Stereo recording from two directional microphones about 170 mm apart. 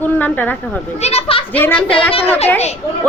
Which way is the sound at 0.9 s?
40° left (ahead or behind).